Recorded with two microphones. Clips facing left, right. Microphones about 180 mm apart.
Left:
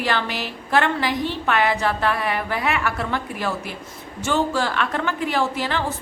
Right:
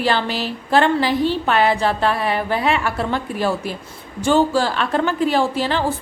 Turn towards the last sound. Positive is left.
turn(degrees=-30)  # may be behind; listen again after turning